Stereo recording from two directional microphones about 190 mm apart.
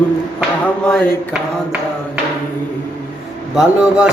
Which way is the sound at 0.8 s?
5° left (ahead or behind).